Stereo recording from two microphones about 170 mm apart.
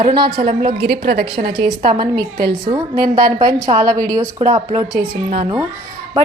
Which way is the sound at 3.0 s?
60° right (ahead or behind).